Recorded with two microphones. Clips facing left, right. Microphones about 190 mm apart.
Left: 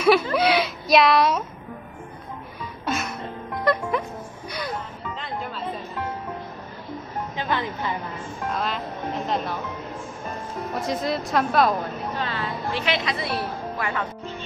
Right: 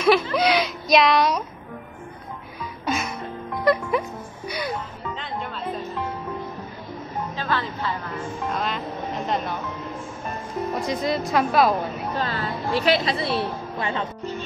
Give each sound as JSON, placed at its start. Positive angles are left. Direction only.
{"t": 0.0, "sound": "a sound", "side_deg": 5}
{"t": 2.8, "sound": "music", "side_deg": 0}
{"t": 3.6, "sound": "speech", "side_deg": -5}
{"t": 4.5, "sound": "music", "side_deg": -5}
{"t": 7.3, "sound": "speech", "side_deg": 15}
{"t": 8.5, "sound": "speech", "side_deg": 0}
{"t": 10.9, "sound": "a woman's voice", "side_deg": 0}
{"t": 12.2, "sound": "a woman's voice", "side_deg": -40}